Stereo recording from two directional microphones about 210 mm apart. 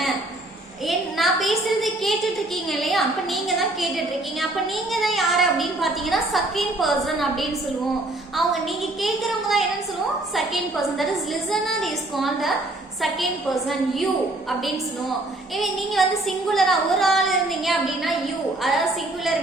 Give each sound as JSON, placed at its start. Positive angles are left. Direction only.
{"t": 0.9, "sound": "a woman's voice", "side_deg": 0}
{"t": 9.0, "sound": "a woman's voice", "side_deg": 0}
{"t": 15.5, "sound": "a woman's voice", "side_deg": 0}